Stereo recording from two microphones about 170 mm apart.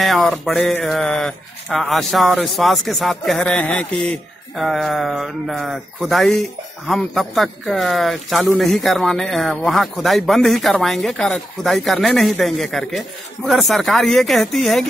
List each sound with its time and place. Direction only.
0.0 s speech: centre (ahead or behind)